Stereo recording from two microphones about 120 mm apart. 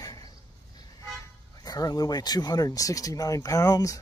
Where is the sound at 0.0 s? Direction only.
30° left (ahead or behind).